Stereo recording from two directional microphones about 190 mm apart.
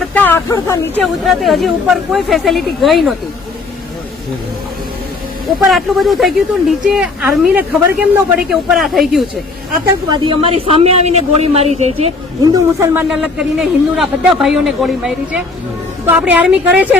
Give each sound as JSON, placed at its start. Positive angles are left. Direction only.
{"t": 0.1, "sound": "speech", "side_deg": 10}
{"t": 1.0, "sound": "a woman's voice", "side_deg": 0}
{"t": 5.6, "sound": "a woman's voice", "side_deg": 0}
{"t": 10.1, "sound": "a man's voice", "side_deg": -30}
{"t": 12.5, "sound": "a woman's voice", "side_deg": -15}
{"t": 13.6, "sound": "a woman's voice", "side_deg": 0}